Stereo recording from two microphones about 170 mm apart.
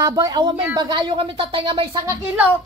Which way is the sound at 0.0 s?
20° right (ahead or behind).